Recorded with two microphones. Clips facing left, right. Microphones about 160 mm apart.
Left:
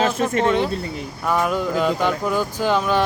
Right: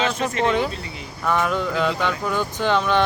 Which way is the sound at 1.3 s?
10° left (ahead or behind).